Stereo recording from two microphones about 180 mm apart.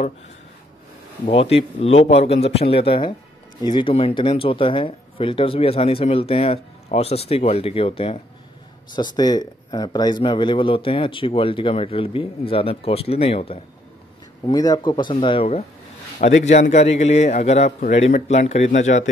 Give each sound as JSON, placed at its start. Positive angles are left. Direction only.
{"t": 1.3, "sound": "speech", "side_deg": 30}
{"t": 14.4, "sound": "speech", "side_deg": 20}
{"t": 16.2, "sound": "a man's voice", "side_deg": 45}
{"t": 16.7, "sound": "speech", "side_deg": 35}